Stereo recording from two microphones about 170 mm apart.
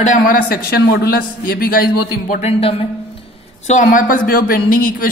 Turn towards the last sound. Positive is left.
turn(degrees=55)  # may be behind; listen again after turning